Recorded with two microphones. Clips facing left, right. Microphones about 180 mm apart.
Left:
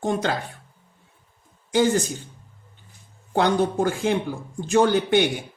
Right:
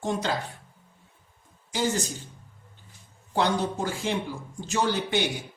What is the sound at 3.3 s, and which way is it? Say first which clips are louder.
A man's voice: left 5 dB; 55° left (ahead or behind).